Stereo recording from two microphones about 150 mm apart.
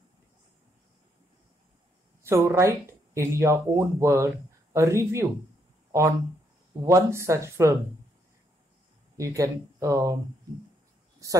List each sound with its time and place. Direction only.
2.2 s speech: 20° right (ahead or behind)
5.9 s a sound: 20° right (ahead or behind)
6.8 s speech: 20° right (ahead or behind)
9.1 s speech: 20° right (ahead or behind)
11.2 s speech: 20° right (ahead or behind)